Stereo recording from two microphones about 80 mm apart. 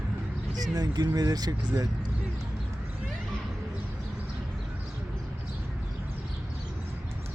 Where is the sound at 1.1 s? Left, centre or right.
Right.